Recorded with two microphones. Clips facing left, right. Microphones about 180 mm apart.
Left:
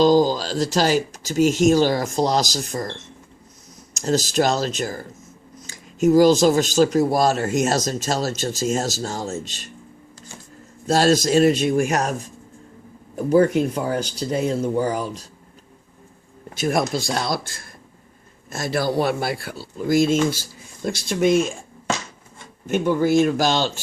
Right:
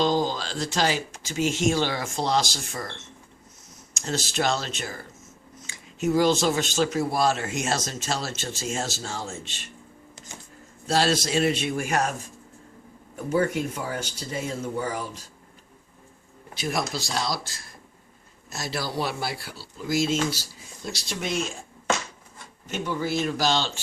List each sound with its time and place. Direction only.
0.0 s speech: 40° left (ahead or behind)
3.9 s speech: 40° left (ahead or behind)
10.8 s speech: 45° left (ahead or behind)
13.3 s speech: 35° left (ahead or behind)
16.6 s speech: 50° left (ahead or behind)
22.6 s speech: 50° left (ahead or behind)